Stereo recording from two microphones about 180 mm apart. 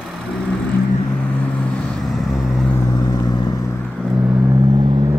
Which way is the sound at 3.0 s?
20° left (ahead or behind).